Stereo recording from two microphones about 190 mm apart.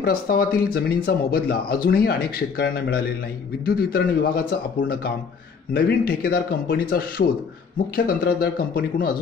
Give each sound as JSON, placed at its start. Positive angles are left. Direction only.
{"t": 0.0, "sound": "speech", "side_deg": 50}